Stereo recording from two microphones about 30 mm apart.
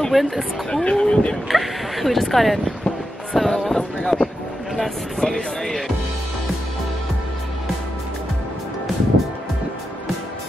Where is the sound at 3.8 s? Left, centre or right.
Centre.